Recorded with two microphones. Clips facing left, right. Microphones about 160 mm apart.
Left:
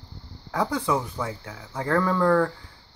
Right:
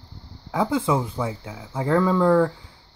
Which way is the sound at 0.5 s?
20° right (ahead or behind).